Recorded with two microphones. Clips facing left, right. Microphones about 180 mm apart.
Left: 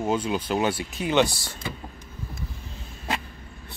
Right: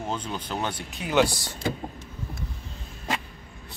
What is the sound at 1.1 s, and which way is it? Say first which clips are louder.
Speech: even; 10° right (ahead or behind).